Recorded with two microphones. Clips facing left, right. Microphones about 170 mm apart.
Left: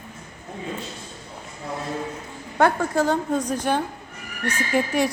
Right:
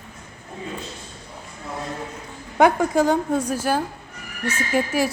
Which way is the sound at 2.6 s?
15° right (ahead or behind).